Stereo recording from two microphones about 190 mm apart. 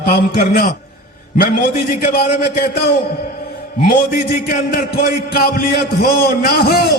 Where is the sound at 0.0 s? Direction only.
55° left (ahead or behind).